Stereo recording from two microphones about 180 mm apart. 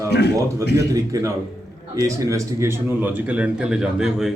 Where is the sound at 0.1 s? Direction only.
65° left (ahead or behind).